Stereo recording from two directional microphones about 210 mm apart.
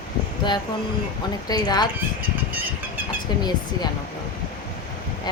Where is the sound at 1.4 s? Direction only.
20° left (ahead or behind).